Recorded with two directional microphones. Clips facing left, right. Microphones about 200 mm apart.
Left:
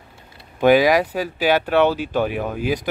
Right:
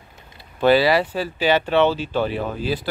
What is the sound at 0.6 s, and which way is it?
Speech, 15° left (ahead or behind).